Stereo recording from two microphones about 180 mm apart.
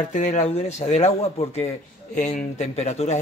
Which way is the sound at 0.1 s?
40° left (ahead or behind).